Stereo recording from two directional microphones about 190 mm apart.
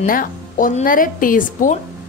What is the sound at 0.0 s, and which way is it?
A woman's voice, 45° left (ahead or behind).